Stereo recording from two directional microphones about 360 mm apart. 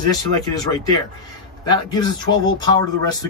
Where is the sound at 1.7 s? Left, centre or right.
Centre.